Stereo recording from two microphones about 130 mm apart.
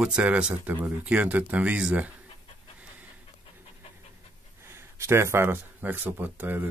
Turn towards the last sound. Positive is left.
turn(degrees=-15)  # may be behind; listen again after turning